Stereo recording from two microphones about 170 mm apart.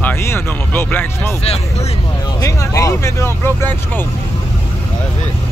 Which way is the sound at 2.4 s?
20° left (ahead or behind).